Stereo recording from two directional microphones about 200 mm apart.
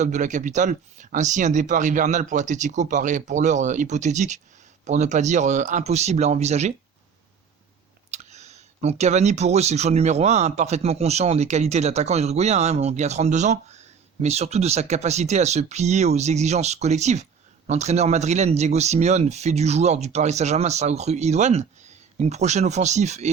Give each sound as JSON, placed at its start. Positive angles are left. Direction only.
{"t": 0.0, "sound": "speech", "side_deg": -40}
{"t": 8.1, "sound": "speech", "side_deg": -35}